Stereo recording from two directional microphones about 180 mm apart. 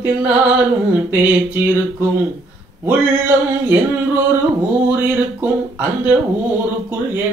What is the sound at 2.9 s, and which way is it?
Mantra, 10° right (ahead or behind).